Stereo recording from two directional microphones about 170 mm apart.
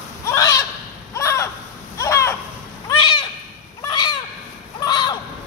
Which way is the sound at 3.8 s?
25° left (ahead or behind).